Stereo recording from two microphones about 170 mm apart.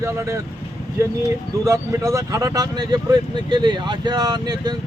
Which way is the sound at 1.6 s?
20° right (ahead or behind).